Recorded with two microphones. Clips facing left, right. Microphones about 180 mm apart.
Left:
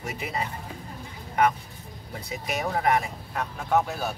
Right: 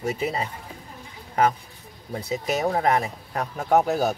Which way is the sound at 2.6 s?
40° right (ahead or behind).